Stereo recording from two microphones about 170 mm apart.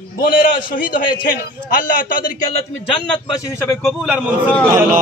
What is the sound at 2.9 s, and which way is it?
Speech, 25° left (ahead or behind).